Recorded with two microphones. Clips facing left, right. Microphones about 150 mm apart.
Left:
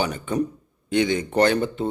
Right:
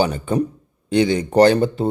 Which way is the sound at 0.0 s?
30° right (ahead or behind).